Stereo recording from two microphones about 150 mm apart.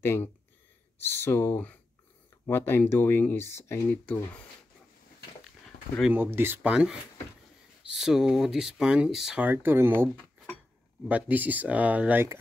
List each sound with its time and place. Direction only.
0.0 s speech: 15° left (ahead or behind)
6.1 s speech: 15° right (ahead or behind)
11.1 s speech: 10° right (ahead or behind)